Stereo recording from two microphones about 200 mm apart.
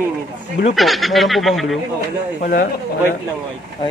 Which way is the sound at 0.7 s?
Centre (ahead or behind).